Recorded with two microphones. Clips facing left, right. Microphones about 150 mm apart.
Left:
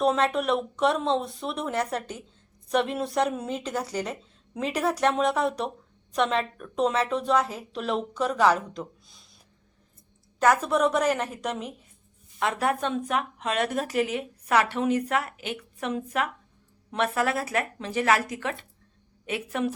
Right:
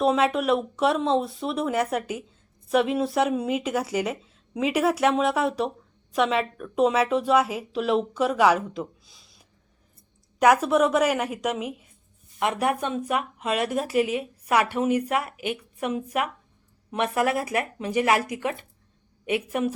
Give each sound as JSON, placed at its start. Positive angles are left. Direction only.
{"t": 0.0, "sound": "speech", "side_deg": -5}
{"t": 10.4, "sound": "a woman's voice", "side_deg": -10}